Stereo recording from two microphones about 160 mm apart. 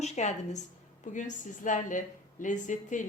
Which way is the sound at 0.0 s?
45° left (ahead or behind).